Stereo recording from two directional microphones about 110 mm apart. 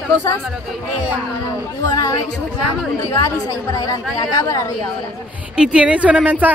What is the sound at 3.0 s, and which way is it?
A woman's voice, 25° left (ahead or behind).